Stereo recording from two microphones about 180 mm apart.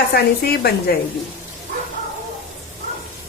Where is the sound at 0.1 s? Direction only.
60° left (ahead or behind).